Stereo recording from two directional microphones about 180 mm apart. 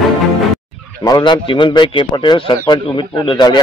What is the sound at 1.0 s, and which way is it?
Speech, 25° left (ahead or behind).